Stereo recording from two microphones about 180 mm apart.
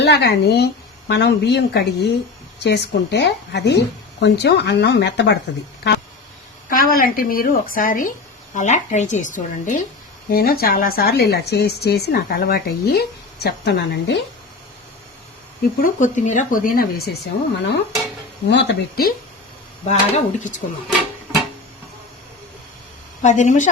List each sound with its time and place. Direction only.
0.0 s a woman's voice: 65° left (ahead or behind)
6.7 s a woman's voice: 50° left (ahead or behind)
10.2 s a woman's voice: 55° left (ahead or behind)
15.8 s speech: 45° left (ahead or behind)
17.6 s a woman's voice: 70° left (ahead or behind)
19.8 s speech: 40° left (ahead or behind)
23.2 s speech: 40° left (ahead or behind)